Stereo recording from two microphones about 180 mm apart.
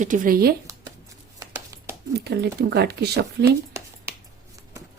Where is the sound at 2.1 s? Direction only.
65° right (ahead or behind).